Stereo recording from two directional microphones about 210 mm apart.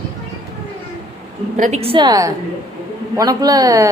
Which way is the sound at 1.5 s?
35° right (ahead or behind).